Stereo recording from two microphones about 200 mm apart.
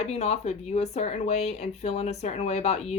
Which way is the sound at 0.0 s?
30° left (ahead or behind).